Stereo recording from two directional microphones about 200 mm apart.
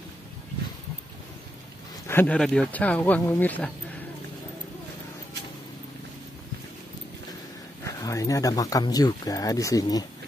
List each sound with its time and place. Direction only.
2.0 s speech: 10° left (ahead or behind)
7.8 s speech: 15° left (ahead or behind)